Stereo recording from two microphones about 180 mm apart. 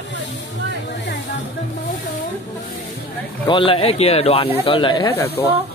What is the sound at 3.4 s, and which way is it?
Speech, 30° left (ahead or behind).